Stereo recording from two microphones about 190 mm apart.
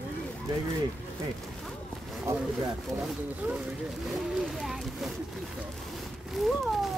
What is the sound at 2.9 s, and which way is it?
Speech, 5° right (ahead or behind).